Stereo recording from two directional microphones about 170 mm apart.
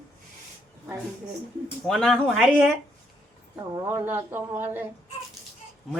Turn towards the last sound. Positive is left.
turn(degrees=-15)  # may be behind; listen again after turning